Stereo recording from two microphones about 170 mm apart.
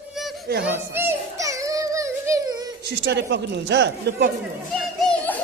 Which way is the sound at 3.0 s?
85° right.